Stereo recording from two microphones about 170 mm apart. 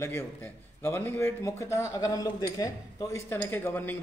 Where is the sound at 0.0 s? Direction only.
15° left (ahead or behind).